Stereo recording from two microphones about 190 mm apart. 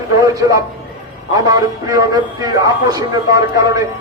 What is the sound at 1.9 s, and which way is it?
A man's voice, 20° right (ahead or behind).